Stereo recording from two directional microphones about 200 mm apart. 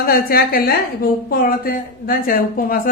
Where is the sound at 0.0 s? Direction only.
45° left (ahead or behind).